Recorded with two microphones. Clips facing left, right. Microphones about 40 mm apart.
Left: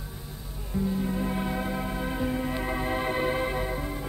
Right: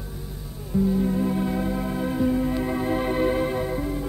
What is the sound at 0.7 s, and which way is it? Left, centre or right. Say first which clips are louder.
Music: right 6 dB; centre.